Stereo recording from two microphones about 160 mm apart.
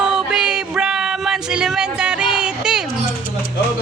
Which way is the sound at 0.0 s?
5° right (ahead or behind).